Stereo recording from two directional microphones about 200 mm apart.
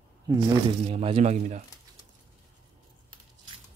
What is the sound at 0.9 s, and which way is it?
Speech, 30° right (ahead or behind).